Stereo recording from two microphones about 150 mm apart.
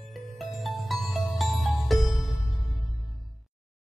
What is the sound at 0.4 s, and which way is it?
Music, centre (ahead or behind).